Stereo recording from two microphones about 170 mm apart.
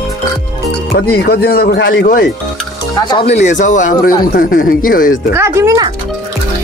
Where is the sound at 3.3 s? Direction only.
45° left (ahead or behind).